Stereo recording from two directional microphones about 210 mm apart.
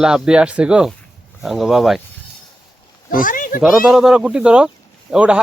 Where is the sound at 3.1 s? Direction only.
40° left (ahead or behind).